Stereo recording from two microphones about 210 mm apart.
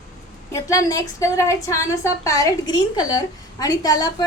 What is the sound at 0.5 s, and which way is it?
A woman's voice, 15° left (ahead or behind).